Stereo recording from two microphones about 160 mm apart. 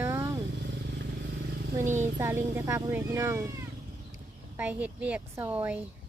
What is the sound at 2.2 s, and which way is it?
Speech, 15° right (ahead or behind).